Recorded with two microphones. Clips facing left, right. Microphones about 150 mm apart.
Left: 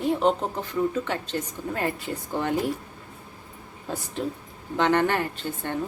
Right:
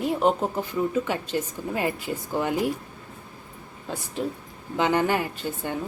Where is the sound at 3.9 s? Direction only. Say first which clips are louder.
Even; centre (ahead or behind).